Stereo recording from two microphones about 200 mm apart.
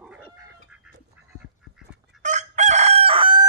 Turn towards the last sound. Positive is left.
turn(degrees=-25)  # may be behind; listen again after turning